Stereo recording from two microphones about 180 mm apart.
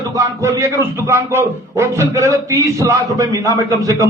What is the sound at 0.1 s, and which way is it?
Speech, 20° right (ahead or behind).